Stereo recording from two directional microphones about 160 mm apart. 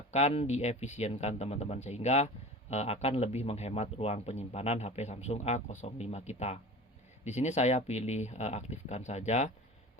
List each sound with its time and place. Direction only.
0.1 s speech: 45° left (ahead or behind)